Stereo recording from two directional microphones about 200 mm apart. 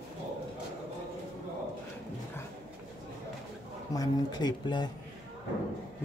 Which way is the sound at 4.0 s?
20° left (ahead or behind).